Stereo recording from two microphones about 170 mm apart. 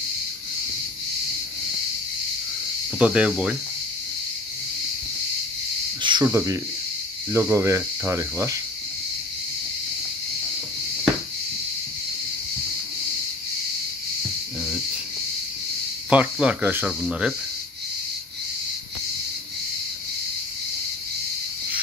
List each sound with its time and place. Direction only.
3.0 s speech: 5° right (ahead or behind)
6.0 s speech: 25° right (ahead or behind)
16.1 s speech: 5° right (ahead or behind)